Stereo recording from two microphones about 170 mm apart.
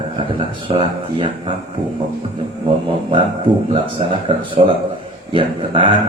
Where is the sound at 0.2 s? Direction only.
30° right (ahead or behind).